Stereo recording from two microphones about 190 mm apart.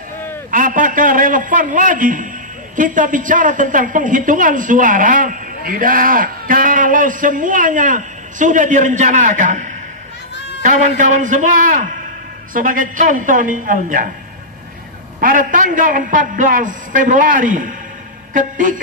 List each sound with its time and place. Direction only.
0.5 s a sound: 45° right (ahead or behind)
2.7 s a woman's voice: 45° right (ahead or behind)
15.1 s a woman's voice: 45° right (ahead or behind)